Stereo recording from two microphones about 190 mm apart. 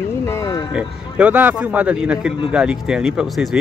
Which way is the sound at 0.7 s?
5° right (ahead or behind).